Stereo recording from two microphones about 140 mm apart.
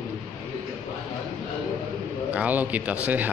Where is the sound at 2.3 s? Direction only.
10° right (ahead or behind).